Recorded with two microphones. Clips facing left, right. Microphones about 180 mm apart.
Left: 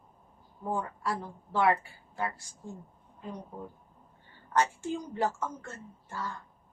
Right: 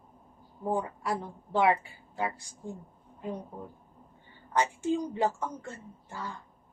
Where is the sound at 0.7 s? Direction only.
15° right (ahead or behind).